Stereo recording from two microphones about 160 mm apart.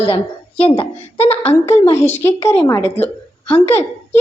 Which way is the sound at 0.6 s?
40° left (ahead or behind).